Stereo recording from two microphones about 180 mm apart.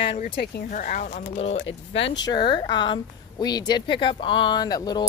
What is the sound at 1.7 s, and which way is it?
Speech, 90° left.